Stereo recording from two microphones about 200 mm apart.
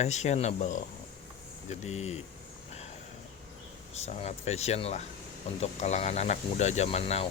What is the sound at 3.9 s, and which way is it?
Speech, 35° left (ahead or behind).